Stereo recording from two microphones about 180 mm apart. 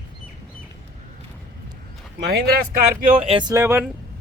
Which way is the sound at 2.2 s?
60° right (ahead or behind).